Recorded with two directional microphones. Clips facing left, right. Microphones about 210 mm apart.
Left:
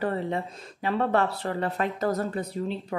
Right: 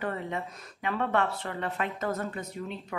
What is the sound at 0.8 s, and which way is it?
Speech, 35° left (ahead or behind).